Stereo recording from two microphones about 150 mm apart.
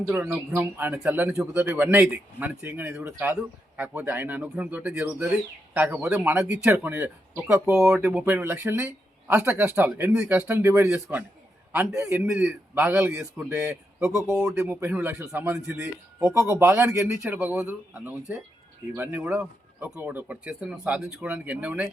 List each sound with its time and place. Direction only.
0.1 s speech: 20° right (ahead or behind)